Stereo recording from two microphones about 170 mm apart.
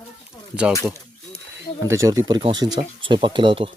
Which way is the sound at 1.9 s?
20° right (ahead or behind).